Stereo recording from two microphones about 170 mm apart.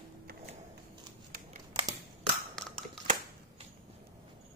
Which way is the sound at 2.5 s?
5° left (ahead or behind).